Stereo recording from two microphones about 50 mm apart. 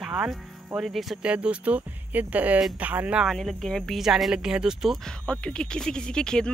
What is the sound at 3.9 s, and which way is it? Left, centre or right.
Speech, centre.